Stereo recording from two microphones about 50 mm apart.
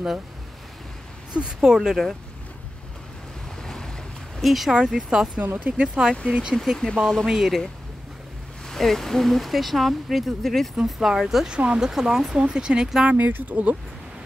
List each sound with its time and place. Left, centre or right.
1.4 s speech: centre
3.6 s boat: centre
4.4 s speech: centre
5.4 s speech: right
5.8 s speech: centre
6.5 s speech: centre
7.2 s speech: centre
10.9 s speech: centre
11.5 s speech: centre
11.9 s speech: centre
13.3 s speech: right